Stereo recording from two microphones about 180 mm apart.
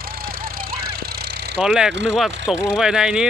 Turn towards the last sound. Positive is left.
turn(degrees=-5)  # may be behind; listen again after turning